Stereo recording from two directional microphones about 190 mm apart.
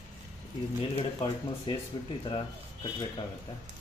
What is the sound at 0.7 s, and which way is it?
Speech, 25° left (ahead or behind).